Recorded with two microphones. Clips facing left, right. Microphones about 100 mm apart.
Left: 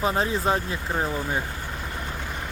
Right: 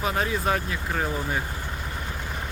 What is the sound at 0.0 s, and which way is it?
Speech, 25° left (ahead or behind).